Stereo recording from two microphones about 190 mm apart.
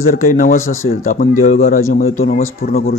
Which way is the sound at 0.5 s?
90° left.